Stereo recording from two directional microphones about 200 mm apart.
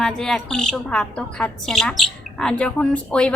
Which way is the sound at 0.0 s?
5° left (ahead or behind).